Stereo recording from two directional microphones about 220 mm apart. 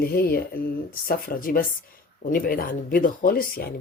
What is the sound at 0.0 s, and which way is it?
Speech, 45° left (ahead or behind).